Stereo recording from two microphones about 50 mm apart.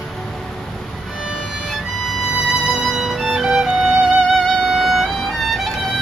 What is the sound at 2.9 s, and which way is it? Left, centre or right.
Music, centre.